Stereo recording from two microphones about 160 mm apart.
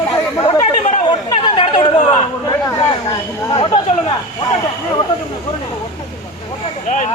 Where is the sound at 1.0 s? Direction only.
30° left (ahead or behind).